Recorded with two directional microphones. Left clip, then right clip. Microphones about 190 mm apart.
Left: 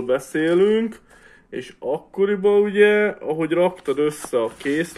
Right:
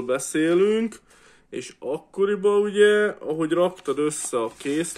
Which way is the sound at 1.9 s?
25° right (ahead or behind).